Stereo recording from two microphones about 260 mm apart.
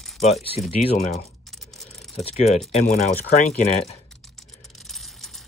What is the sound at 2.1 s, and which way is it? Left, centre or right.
Speech, left.